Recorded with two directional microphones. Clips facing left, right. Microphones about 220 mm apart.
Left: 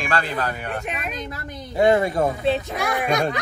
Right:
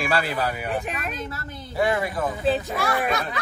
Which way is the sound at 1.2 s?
15° left (ahead or behind).